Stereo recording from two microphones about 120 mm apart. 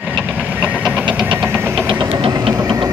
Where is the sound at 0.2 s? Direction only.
15° right (ahead or behind).